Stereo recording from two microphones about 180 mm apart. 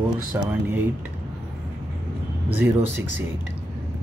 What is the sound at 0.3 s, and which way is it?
Speech, 5° right (ahead or behind).